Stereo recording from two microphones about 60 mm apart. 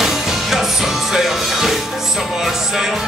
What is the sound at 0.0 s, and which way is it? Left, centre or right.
Music, centre.